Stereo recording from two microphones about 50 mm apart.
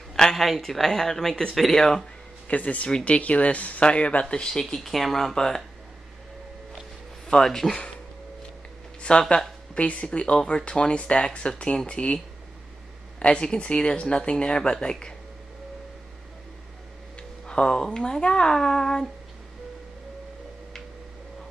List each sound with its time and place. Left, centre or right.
0.1 s speech: centre
2.4 s speech: left; by 5.6 s centre
7.2 s speech: centre
9.1 s speech: centre
13.2 s speech: centre
17.5 s speech: centre